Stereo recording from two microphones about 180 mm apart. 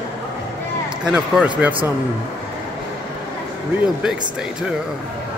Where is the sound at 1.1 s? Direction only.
5° right (ahead or behind).